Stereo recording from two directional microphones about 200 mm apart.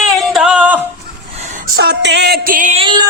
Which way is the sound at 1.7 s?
55° right (ahead or behind).